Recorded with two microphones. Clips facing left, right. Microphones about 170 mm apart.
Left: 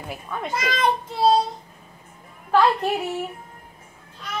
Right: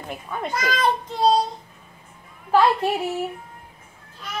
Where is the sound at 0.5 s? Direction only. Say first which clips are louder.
Right 1 dB; 25° left (ahead or behind).